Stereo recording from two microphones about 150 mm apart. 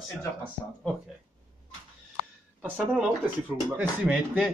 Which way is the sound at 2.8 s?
Centre (ahead or behind).